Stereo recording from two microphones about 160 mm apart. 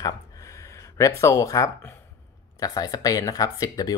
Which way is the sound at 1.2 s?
20° left (ahead or behind).